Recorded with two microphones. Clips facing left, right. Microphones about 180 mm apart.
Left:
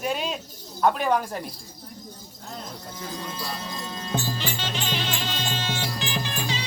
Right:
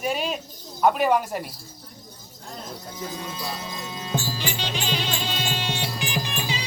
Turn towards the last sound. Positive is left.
turn(degrees=-15)  # may be behind; listen again after turning